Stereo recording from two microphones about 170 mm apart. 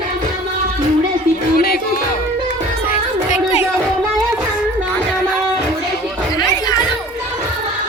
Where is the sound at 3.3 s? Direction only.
40° left (ahead or behind).